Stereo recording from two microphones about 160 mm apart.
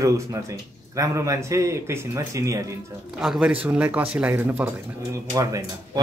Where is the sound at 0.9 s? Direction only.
20° right (ahead or behind).